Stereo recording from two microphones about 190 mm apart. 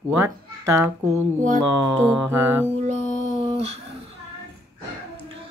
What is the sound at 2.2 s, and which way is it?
Mantra, 10° right (ahead or behind).